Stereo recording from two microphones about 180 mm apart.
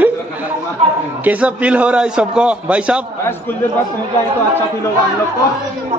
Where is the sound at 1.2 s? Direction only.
10° right (ahead or behind).